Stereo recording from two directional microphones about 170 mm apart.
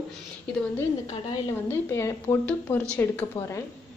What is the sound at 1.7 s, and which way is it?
A woman's voice, 15° left (ahead or behind).